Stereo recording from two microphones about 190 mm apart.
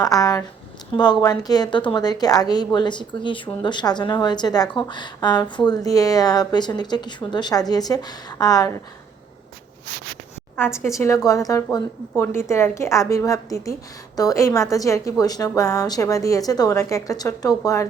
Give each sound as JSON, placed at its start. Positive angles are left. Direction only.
{"t": 0.0, "sound": "a woman's voice", "side_deg": 20}
{"t": 10.6, "sound": "a woman's voice", "side_deg": 15}